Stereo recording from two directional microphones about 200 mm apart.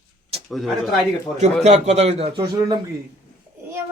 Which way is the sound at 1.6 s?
35° right (ahead or behind).